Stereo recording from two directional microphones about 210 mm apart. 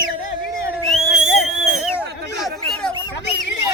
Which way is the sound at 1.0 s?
5° right (ahead or behind).